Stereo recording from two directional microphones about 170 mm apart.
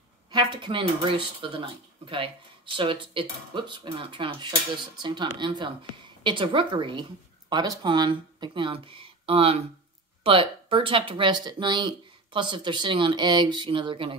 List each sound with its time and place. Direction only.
0.3 s speech: 25° right (ahead or behind)